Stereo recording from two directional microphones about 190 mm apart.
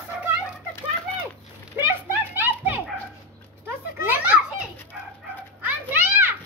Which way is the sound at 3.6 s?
10° right (ahead or behind).